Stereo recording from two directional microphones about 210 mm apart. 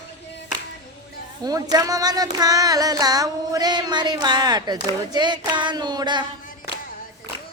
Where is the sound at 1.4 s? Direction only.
20° right (ahead or behind).